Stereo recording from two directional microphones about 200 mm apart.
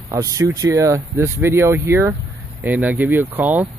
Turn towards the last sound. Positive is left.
turn(degrees=-10)  # may be behind; listen again after turning